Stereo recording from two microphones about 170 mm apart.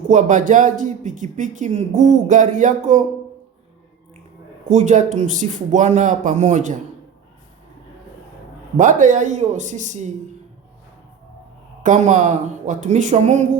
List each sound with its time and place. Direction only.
0.1 s speech: 45° right (ahead or behind)
4.7 s speech: 45° right (ahead or behind)
8.8 s speech: 50° right (ahead or behind)
11.8 s speech: 45° right (ahead or behind)